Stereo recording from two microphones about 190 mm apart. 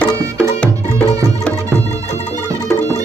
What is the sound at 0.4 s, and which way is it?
Music, 5° left (ahead or behind).